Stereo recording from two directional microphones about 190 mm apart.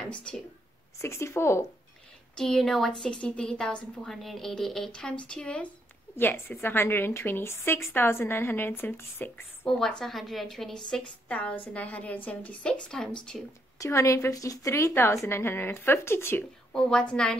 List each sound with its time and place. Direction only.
0.1 s a woman's voice: 5° left (ahead or behind)
2.3 s a woman's voice: centre (ahead or behind)
13.7 s a woman's voice: 15° left (ahead or behind)